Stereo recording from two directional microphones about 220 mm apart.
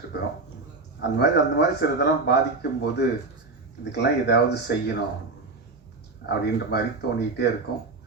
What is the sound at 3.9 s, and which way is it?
Speech, 50° left (ahead or behind).